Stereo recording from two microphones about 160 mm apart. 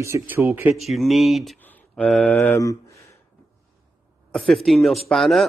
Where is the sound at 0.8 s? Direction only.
Centre (ahead or behind).